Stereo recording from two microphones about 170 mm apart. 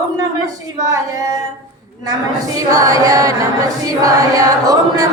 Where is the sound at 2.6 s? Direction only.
20° right (ahead or behind).